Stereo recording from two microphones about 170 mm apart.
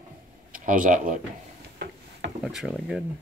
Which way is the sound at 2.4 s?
5° right (ahead or behind).